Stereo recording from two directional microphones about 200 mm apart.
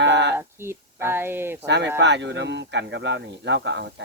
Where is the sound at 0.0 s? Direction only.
60° right (ahead or behind).